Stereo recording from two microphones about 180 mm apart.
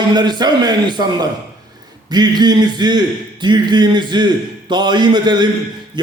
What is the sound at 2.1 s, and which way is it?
A man's voice, 25° right (ahead or behind).